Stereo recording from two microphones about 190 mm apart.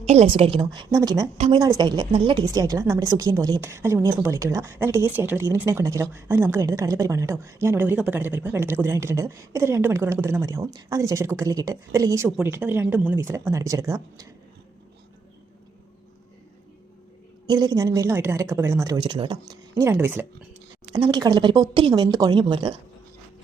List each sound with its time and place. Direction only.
0.0 s speech: 35° right (ahead or behind); by 1.3 s 20° right (ahead or behind)
1.4 s a woman's voice: 30° right (ahead or behind)
17.4 s a woman's voice: 20° right (ahead or behind)